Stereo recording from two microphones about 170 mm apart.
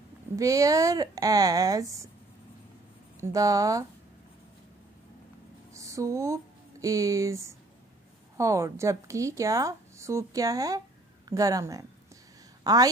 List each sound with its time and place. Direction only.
0.4 s a woman's voice: 20° right (ahead or behind)
3.2 s a woman's voice: 20° right (ahead or behind)
5.7 s a woman's voice: 20° right (ahead or behind)